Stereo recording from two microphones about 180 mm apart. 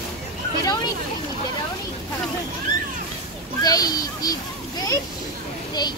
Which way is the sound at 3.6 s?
20° left (ahead or behind).